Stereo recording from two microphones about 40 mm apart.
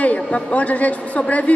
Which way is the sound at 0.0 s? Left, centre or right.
Left.